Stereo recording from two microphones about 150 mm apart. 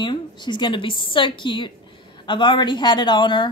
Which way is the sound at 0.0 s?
30° left (ahead or behind).